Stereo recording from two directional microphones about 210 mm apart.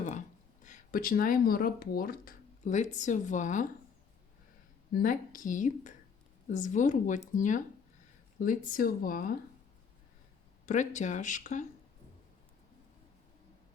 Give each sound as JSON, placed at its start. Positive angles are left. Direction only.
{"t": 0.6, "sound": "speech", "side_deg": 40}
{"t": 4.9, "sound": "speech", "side_deg": 40}
{"t": 10.7, "sound": "speech", "side_deg": 35}